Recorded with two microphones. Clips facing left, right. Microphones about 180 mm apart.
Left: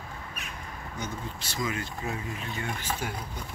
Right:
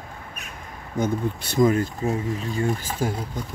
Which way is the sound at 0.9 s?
50° right (ahead or behind).